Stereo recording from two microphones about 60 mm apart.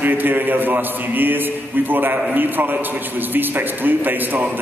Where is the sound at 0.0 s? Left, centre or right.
Right.